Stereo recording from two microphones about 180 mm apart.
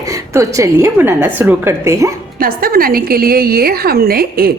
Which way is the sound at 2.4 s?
55° right (ahead or behind).